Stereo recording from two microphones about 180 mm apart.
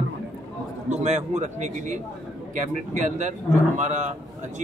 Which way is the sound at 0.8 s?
40° right (ahead or behind).